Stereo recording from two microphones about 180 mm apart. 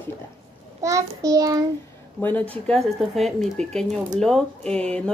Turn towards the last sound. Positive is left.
turn(degrees=5)  # may be behind; listen again after turning